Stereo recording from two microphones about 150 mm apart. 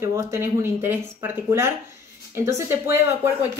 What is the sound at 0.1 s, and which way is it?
Speech, 15° right (ahead or behind).